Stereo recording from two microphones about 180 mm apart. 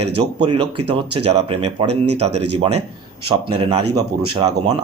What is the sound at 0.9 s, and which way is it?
Speech, 30° right (ahead or behind).